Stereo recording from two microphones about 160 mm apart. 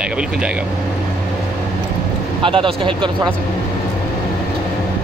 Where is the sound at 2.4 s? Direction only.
30° right (ahead or behind).